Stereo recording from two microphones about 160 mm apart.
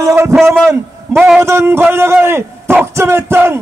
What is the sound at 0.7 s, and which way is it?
A man's voice, 15° right (ahead or behind).